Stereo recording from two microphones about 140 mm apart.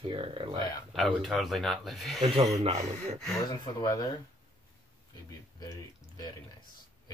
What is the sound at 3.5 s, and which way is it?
Speech, 25° left (ahead or behind).